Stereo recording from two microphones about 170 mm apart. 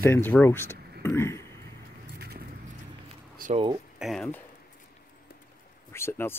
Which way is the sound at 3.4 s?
55° right (ahead or behind).